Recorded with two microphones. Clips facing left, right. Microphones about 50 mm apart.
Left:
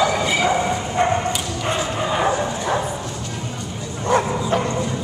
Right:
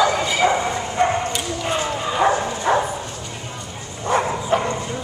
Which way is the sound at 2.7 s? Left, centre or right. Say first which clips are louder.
Right 5 dB; right.